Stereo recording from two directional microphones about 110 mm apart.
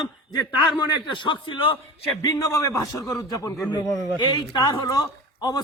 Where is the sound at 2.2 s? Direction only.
35° left (ahead or behind).